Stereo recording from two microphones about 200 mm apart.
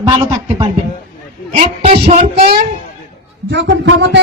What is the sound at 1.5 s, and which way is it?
Music, 30° right (ahead or behind).